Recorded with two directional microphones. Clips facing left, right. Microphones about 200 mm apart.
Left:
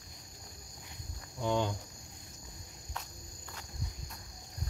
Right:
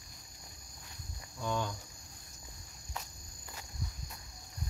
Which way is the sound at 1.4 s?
20° left (ahead or behind).